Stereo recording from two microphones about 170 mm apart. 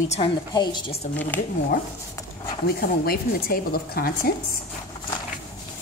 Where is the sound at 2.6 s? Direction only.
60° left (ahead or behind).